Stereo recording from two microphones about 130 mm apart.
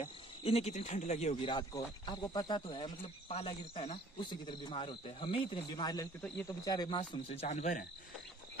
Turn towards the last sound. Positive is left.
turn(degrees=75)  # may be behind; listen again after turning